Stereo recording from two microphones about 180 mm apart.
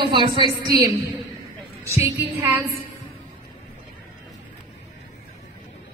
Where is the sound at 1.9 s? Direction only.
15° right (ahead or behind).